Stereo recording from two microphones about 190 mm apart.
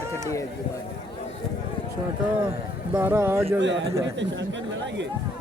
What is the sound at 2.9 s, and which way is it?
Speech, 10° right (ahead or behind).